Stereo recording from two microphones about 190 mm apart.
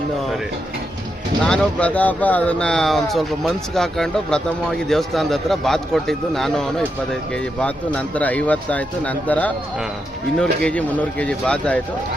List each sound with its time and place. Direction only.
1.5 s speech: 5° left (ahead or behind)
7.9 s speech: 10° left (ahead or behind)